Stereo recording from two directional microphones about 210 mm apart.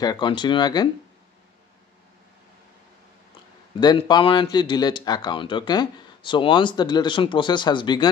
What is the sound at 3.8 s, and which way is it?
Speech, 20° left (ahead or behind).